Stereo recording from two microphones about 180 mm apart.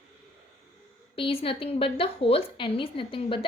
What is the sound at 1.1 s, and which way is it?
A woman's voice, 30° left (ahead or behind).